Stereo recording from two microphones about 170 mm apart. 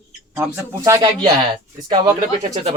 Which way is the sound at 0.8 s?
20° right (ahead or behind).